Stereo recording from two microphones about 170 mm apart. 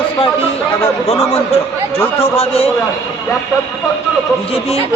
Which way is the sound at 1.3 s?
35° left (ahead or behind).